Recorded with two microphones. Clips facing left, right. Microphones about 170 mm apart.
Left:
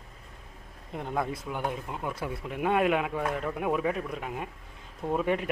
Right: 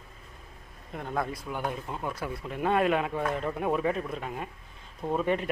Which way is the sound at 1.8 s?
10° left (ahead or behind).